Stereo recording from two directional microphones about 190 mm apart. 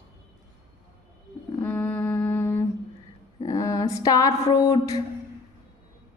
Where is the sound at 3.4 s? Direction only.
15° left (ahead or behind).